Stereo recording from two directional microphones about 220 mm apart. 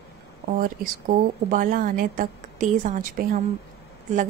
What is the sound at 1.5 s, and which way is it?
Speech, 40° right (ahead or behind).